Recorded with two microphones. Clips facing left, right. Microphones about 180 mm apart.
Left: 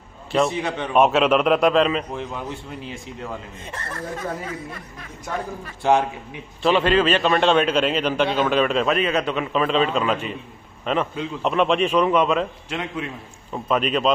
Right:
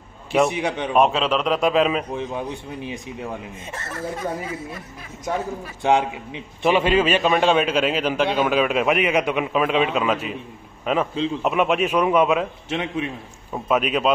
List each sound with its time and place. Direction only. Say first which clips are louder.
0.3 s a man's voice: right 1 dB; 15° right (ahead or behind)
0.9 s a man's voice: left 3 dB; 5° left (ahead or behind)
2.1 s a man's voice: right 3 dB; 20° right (ahead or behind)
5.8 s a man's voice: even; 15° right (ahead or behind)
12.6 s a man's voice: right 3 dB; 20° right (ahead or behind)
13.7 s a man's voice: even; 10° right (ahead or behind)